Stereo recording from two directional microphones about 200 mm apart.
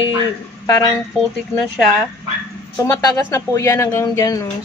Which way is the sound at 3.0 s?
15° left (ahead or behind).